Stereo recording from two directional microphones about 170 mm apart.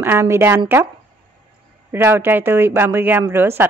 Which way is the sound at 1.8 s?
15° right (ahead or behind).